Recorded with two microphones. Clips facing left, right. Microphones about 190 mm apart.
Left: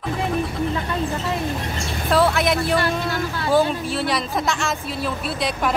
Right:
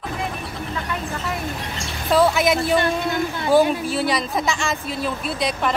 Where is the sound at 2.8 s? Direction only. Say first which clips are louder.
Right 2 dB; 20° right (ahead or behind).